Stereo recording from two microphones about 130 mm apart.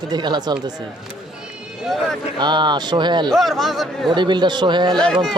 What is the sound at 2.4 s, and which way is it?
Speech, 35° right (ahead or behind).